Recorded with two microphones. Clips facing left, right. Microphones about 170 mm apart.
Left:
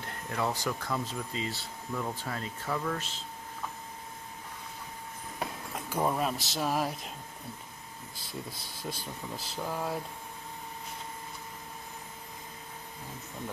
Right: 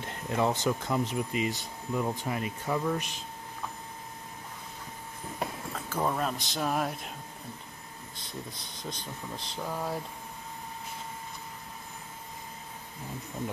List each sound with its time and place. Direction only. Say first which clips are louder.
0.0 s speech: right 4 dB; 20° right (ahead or behind)
5.9 s speech: left 1 dB; 10° left (ahead or behind)
8.3 s speech: left 1 dB; 5° left (ahead or behind)